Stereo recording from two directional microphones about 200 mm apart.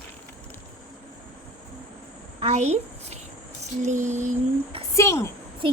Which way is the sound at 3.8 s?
35° right (ahead or behind).